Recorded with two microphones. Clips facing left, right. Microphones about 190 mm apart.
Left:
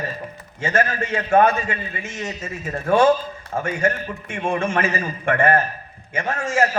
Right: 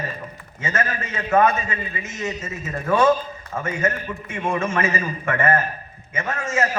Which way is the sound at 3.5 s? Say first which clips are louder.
Left 2 dB; 35° left (ahead or behind).